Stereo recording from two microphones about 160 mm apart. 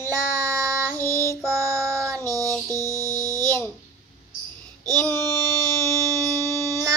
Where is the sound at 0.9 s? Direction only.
20° right (ahead or behind).